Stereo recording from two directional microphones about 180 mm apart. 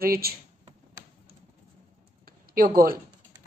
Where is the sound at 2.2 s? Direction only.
55° right (ahead or behind).